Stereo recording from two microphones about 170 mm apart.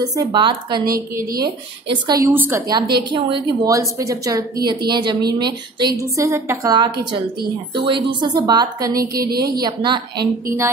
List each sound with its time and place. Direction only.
0.1 s a woman's voice: 20° right (ahead or behind)
0.8 s a woman's voice: 60° right (ahead or behind)
1.9 s a woman's voice: 25° right (ahead or behind)
3.1 s a woman's voice: 30° right (ahead or behind)
3.6 s a woman's voice: 20° right (ahead or behind)
9.2 s a woman's voice: 65° right (ahead or behind)
9.6 s a woman's voice: 25° right (ahead or behind)